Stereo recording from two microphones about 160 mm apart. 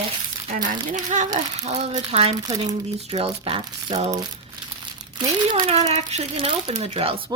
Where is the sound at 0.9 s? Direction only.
50° right (ahead or behind).